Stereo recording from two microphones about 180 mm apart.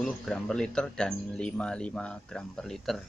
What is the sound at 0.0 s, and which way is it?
Speech, 5° left (ahead or behind).